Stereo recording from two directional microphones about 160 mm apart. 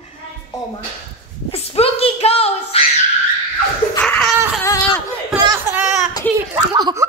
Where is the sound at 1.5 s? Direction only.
40° left (ahead or behind).